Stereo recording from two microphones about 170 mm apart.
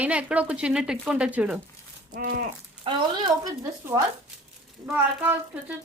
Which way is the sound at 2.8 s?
20° right (ahead or behind).